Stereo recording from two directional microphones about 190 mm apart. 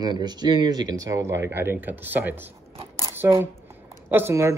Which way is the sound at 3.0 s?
15° right (ahead or behind).